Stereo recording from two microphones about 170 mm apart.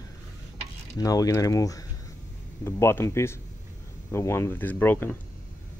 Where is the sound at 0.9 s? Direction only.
20° left (ahead or behind).